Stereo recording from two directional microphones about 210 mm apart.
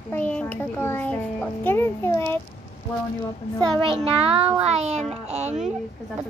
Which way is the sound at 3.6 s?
25° right (ahead or behind).